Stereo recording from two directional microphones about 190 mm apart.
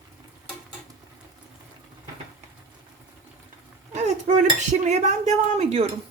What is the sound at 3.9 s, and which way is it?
Speech, 40° right (ahead or behind).